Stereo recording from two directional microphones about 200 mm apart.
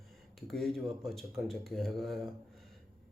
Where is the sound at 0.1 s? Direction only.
Centre (ahead or behind).